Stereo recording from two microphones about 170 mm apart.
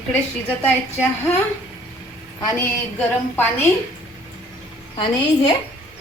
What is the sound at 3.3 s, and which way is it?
Speech, 10° left (ahead or behind).